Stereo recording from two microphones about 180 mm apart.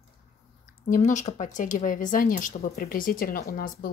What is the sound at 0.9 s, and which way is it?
Speech, 45° left (ahead or behind).